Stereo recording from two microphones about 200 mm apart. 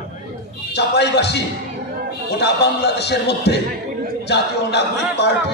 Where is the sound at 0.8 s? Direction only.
60° left (ahead or behind).